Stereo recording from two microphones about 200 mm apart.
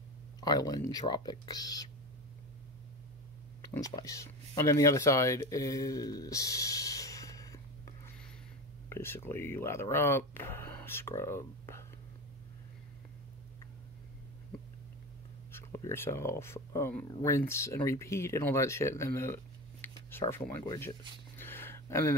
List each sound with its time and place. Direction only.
0.4 s speech: 20° left (ahead or behind)
3.7 s speech: 15° left (ahead or behind)
15.5 s speech: 15° left (ahead or behind)
21.4 s a sound: 10° left (ahead or behind)